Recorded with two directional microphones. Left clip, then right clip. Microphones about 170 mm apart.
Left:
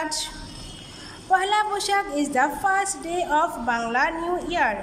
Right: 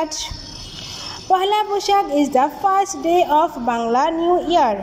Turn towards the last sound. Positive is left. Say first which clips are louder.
# right 8 dB
turn(degrees=-15)  # may be behind; listen again after turning